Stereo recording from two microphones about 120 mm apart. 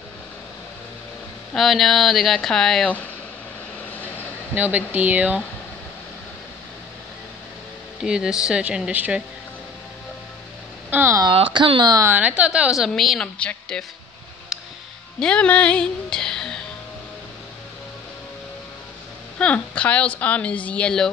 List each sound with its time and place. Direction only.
1.5 s a woman's voice: centre (ahead or behind)
4.6 s speech: 15° right (ahead or behind)
8.0 s speech: 5° right (ahead or behind)
10.9 s speech: 20° right (ahead or behind)
11.3 s speech: 45° right (ahead or behind)
12.1 s a woman's voice: 10° right (ahead or behind); by 13.8 s 10° left (ahead or behind)
14.5 s music: 5° right (ahead or behind)
15.1 s speech: 10° left (ahead or behind)
19.3 s a woman's voice: 10° left (ahead or behind)